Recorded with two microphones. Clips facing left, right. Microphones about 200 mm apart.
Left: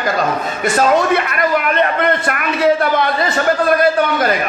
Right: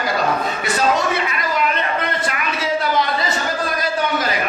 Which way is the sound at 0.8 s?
55° left (ahead or behind).